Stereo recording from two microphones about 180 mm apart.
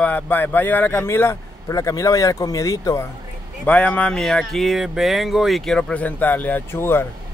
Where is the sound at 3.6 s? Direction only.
10° left (ahead or behind).